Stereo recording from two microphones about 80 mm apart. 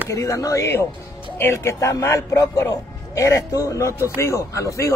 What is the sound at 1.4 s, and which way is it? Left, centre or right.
Speech, left.